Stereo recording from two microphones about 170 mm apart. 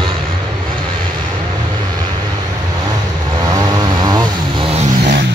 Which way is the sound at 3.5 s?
20° right (ahead or behind).